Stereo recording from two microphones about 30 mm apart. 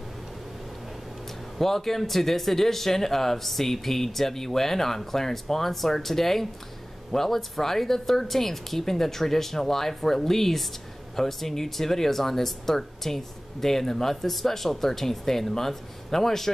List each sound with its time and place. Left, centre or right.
1.6 s speech: centre